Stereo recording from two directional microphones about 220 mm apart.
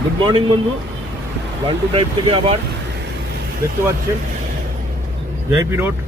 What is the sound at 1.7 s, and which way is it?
Speech, 25° right (ahead or behind).